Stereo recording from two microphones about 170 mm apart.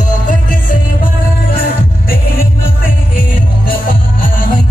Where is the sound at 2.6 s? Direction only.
55° left (ahead or behind).